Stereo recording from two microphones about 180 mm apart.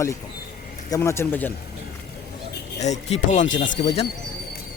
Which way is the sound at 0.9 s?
15° left (ahead or behind).